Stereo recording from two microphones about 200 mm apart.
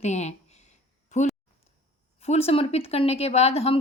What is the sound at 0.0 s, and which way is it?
A woman's voice, 35° left (ahead or behind).